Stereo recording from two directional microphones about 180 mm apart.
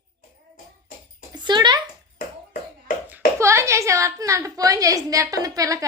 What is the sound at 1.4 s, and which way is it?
Speech, 25° right (ahead or behind).